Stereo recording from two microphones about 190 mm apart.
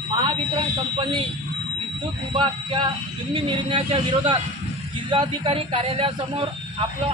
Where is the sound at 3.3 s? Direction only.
25° right (ahead or behind).